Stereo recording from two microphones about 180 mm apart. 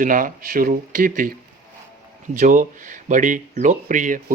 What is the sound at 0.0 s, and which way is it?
Speech, 50° right (ahead or behind).